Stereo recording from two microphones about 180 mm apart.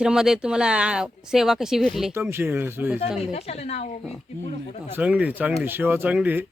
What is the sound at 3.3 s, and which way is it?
Speech, 35° left (ahead or behind).